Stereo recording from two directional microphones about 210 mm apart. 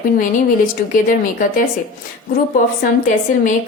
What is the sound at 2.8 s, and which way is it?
Speech, 40° left (ahead or behind).